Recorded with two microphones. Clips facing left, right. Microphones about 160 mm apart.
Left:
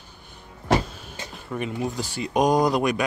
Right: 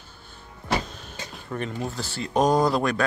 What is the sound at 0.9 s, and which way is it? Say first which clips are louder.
Speech: left 1 dB; 10° left (ahead or behind).